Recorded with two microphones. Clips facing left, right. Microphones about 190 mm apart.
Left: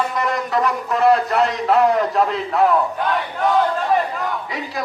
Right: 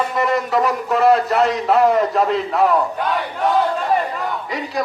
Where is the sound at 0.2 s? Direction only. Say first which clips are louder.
Right 5 dB; centre (ahead or behind).